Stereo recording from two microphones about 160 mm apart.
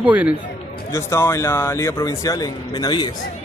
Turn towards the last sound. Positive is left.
turn(degrees=25)  # may be behind; listen again after turning